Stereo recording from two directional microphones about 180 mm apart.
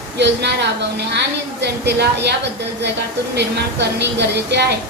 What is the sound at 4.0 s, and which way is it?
Speech, 70° right (ahead or behind).